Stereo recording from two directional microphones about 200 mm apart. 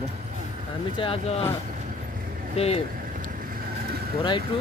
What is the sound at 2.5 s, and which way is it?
Speech, 30° left (ahead or behind).